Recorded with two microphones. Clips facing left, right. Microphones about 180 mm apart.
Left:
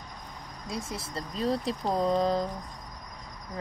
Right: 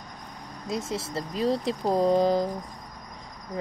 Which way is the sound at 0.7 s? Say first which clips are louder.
Right 6 dB; 25° right (ahead or behind).